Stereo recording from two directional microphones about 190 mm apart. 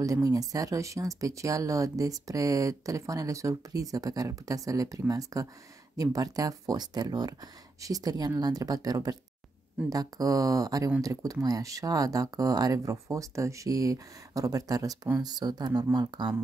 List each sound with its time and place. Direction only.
0.0 s speech: 20° right (ahead or behind)